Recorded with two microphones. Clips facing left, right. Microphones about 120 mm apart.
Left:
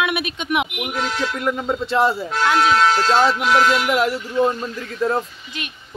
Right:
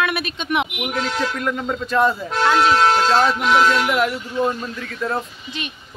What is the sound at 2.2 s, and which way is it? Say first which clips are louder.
Speech: right 1 dB; 5° left (ahead or behind).